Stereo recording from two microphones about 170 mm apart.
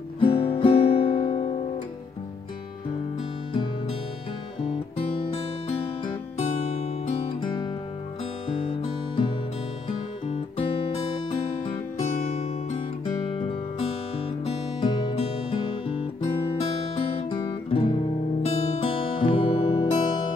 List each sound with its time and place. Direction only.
0.2 s guitar: 35° left (ahead or behind)
6.8 s music: 35° left (ahead or behind)
9.8 s guitar: 35° left (ahead or behind)
12.4 s music: 35° left (ahead or behind)
17.3 s music: 25° left (ahead or behind)